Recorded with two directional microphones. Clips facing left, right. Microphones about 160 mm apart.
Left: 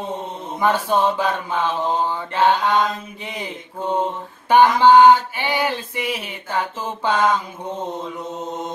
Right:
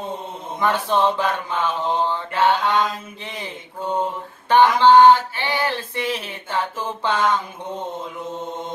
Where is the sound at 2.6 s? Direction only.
50° left (ahead or behind).